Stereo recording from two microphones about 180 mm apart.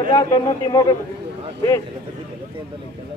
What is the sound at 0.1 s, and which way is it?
Speech, 20° left (ahead or behind).